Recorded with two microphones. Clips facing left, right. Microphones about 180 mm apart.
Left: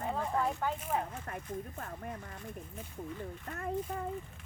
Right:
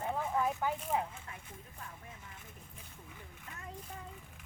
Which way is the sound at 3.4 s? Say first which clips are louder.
Left 10 dB; 55° left (ahead or behind).